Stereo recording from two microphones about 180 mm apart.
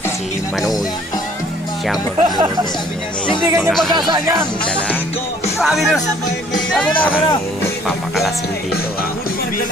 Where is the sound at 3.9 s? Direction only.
25° right (ahead or behind).